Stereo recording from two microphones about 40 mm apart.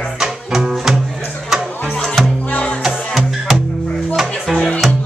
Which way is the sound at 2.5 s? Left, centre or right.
Left.